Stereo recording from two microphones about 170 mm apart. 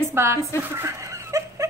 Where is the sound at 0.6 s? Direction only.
15° right (ahead or behind).